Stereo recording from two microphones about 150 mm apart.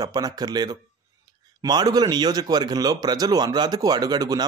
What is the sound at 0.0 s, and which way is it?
Speech, 25° right (ahead or behind).